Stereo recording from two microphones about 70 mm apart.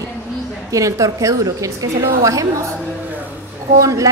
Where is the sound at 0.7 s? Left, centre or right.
Right.